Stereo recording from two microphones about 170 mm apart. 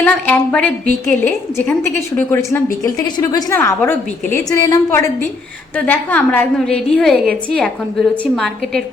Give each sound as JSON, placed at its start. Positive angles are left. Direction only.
{"t": 0.0, "sound": "a woman's voice", "side_deg": 10}